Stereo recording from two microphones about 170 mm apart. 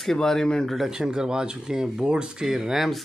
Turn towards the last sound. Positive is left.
turn(degrees=0)  # may be behind; listen again after turning